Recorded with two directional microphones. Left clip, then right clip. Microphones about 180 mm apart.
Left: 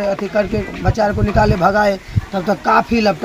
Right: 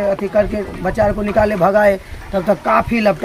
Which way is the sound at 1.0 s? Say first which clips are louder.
Right 1 dB; 10° right (ahead or behind).